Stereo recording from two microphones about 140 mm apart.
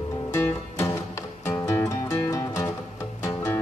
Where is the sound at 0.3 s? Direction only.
20° left (ahead or behind).